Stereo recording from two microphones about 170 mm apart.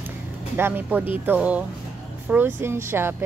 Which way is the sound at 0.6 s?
10° right (ahead or behind).